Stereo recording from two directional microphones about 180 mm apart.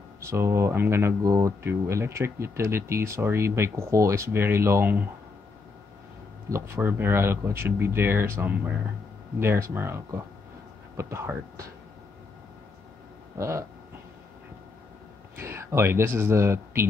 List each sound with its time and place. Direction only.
0.2 s speech: 15° right (ahead or behind)
6.5 s speech: 15° right (ahead or behind)
13.4 s speech: 15° right (ahead or behind)
15.3 s speech: 15° right (ahead or behind)